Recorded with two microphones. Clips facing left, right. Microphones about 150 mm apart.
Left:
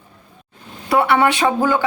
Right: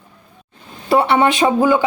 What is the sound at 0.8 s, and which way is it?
Speech, 25° right (ahead or behind).